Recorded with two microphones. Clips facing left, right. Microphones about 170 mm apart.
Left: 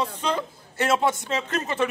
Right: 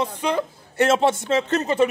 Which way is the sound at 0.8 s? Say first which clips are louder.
Right 3 dB; 25° right (ahead or behind).